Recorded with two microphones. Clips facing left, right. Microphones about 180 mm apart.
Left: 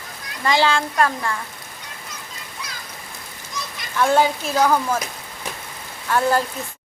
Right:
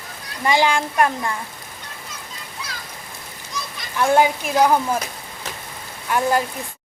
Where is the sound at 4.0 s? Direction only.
15° right (ahead or behind).